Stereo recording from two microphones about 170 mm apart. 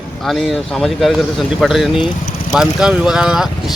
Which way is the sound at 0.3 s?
Centre (ahead or behind).